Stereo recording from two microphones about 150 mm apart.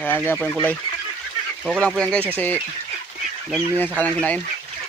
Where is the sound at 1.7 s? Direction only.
Centre (ahead or behind).